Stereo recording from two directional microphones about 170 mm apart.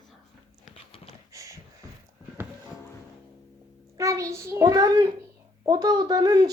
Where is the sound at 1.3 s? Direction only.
20° right (ahead or behind).